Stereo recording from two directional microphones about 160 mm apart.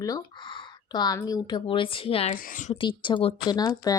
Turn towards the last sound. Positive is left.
turn(degrees=25)  # may be behind; listen again after turning